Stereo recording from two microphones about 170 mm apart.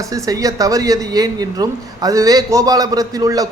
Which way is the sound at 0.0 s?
20° right (ahead or behind).